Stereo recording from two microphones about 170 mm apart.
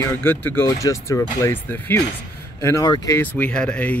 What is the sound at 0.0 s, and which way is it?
Speech, 10° left (ahead or behind).